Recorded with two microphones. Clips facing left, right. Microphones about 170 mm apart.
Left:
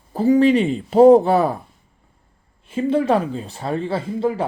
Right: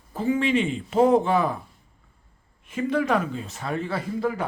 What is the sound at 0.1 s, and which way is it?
Speech, 40° left (ahead or behind).